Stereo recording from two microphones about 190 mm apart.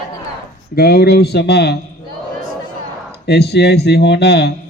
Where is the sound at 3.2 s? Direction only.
60° left (ahead or behind).